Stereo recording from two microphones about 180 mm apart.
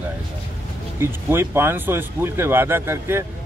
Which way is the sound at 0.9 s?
15° right (ahead or behind).